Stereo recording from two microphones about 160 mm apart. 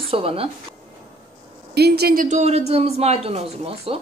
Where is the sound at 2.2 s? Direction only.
45° right (ahead or behind).